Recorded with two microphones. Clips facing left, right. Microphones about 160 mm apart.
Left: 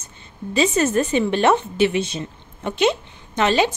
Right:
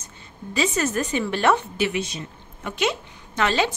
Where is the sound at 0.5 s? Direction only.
25° left (ahead or behind).